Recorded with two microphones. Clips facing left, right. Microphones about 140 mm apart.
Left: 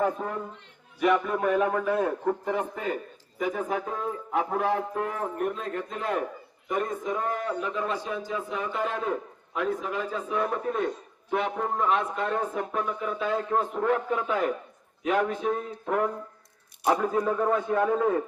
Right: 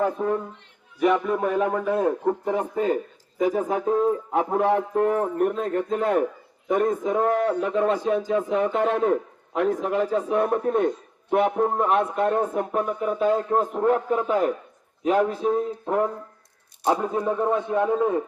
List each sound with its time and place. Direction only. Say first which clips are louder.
1.0 s a man's voice: right 3 dB; 25° right (ahead or behind)
2.5 s a man's voice: right 6 dB; 35° right (ahead or behind); by 18.2 s 20° right (ahead or behind)